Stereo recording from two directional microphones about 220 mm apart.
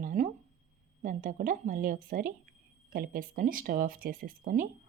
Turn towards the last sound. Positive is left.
turn(degrees=-40)  # may be behind; listen again after turning